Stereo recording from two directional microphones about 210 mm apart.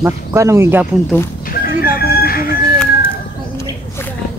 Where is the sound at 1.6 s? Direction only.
45° left (ahead or behind).